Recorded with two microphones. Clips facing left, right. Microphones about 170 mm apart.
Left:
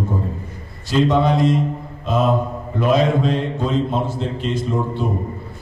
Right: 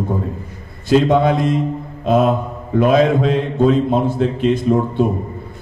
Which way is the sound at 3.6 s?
55° right (ahead or behind).